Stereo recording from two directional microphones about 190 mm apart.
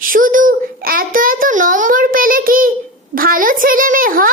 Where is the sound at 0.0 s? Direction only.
45° right (ahead or behind).